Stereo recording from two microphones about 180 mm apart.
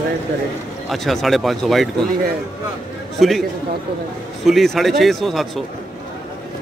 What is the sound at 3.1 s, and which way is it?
Speech, centre (ahead or behind).